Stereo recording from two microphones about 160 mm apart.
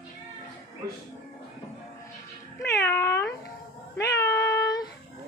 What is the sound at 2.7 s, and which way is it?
Cat, 15° left (ahead or behind).